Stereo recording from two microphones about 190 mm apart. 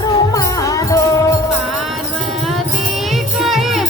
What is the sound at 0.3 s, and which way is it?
Music, 20° left (ahead or behind).